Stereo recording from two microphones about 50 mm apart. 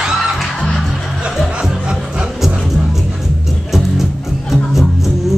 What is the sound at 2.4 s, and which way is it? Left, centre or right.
Music, centre.